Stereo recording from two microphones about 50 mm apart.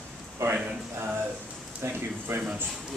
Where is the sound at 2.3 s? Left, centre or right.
Right.